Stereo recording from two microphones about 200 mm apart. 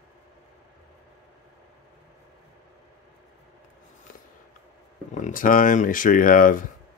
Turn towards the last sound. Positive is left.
turn(degrees=40)  # may be behind; listen again after turning